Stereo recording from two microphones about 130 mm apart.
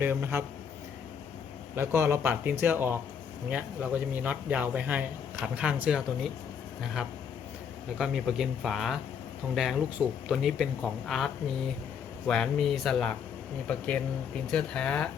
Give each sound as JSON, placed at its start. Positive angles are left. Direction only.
{"t": 0.0, "sound": "speech", "side_deg": -15}
{"t": 1.7, "sound": "speech", "side_deg": -20}
{"t": 12.3, "sound": "speech", "side_deg": 5}